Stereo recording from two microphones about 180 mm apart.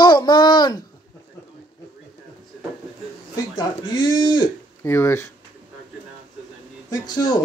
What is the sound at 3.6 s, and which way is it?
Speech, 25° left (ahead or behind).